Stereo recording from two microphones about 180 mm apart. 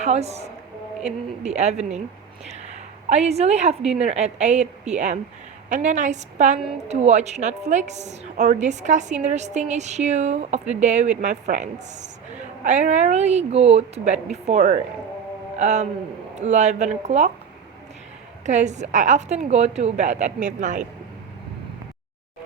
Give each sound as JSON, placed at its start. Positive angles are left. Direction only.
{"t": 0.0, "sound": "a woman's voice", "side_deg": -35}
{"t": 18.4, "sound": "a woman's voice", "side_deg": -40}